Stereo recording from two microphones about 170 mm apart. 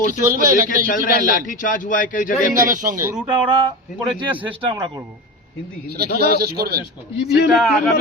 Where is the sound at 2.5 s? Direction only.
50° right (ahead or behind).